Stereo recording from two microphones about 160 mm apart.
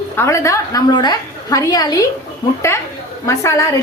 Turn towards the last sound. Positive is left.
turn(degrees=20)  # may be behind; listen again after turning